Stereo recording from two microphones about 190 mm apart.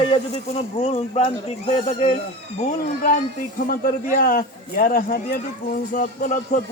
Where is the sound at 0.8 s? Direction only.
30° left (ahead or behind).